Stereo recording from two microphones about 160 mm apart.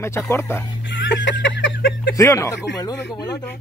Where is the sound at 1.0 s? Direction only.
90° left.